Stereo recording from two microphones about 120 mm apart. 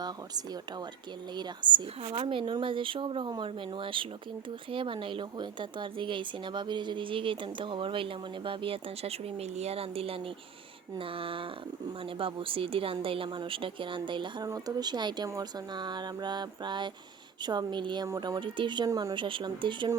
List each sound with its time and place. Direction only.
1.4 s a woman's voice: 45° right (ahead or behind)
14.4 s a sound: 30° right (ahead or behind)
18.9 s speech: 30° right (ahead or behind)
19.1 s a woman's voice: 45° right (ahead or behind)